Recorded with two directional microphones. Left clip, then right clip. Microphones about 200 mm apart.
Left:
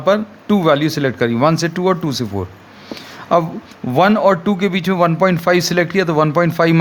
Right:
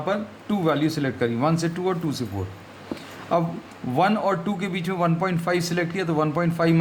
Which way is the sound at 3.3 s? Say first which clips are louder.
Left 9 dB; 45° left (ahead or behind).